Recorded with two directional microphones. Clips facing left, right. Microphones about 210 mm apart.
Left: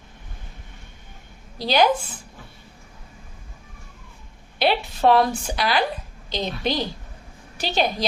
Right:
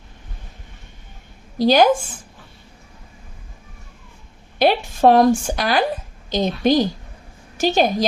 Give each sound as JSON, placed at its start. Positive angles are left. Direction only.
{"t": 1.5, "sound": "a woman's voice", "side_deg": -45}
{"t": 4.6, "sound": "a woman's voice", "side_deg": -45}